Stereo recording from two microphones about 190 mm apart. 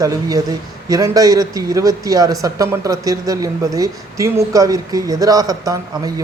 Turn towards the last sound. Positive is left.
turn(degrees=-20)  # may be behind; listen again after turning